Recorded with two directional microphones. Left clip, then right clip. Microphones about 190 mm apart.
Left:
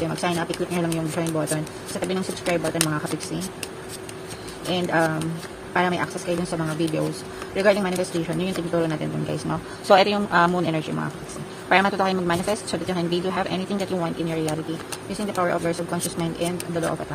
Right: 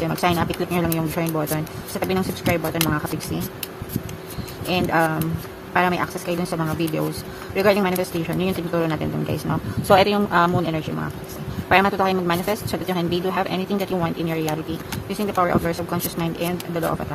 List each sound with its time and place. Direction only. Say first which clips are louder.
0.1 s speech: right 4 dB; 15° right (ahead or behind)
4.6 s speech: right 2 dB; 10° right (ahead or behind)